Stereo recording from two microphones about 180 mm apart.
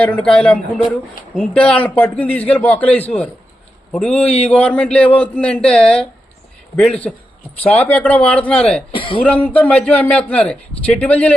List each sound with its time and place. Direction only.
0.0 s a man's voice: 5° left (ahead or behind)
8.9 s speech: 30° left (ahead or behind)
9.2 s a man's voice: 5° left (ahead or behind)